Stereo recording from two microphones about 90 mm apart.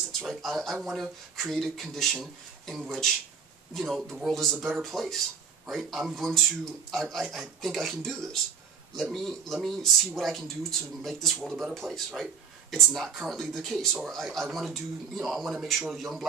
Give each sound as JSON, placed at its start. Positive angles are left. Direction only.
{"t": 0.2, "sound": "speech", "side_deg": 0}